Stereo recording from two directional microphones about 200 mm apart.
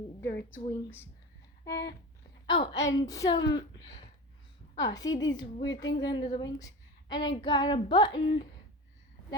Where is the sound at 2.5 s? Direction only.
20° left (ahead or behind).